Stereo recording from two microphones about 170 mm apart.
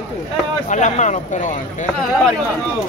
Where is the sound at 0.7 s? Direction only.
45° left (ahead or behind).